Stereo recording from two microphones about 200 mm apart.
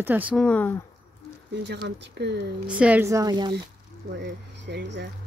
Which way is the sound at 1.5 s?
60° right (ahead or behind).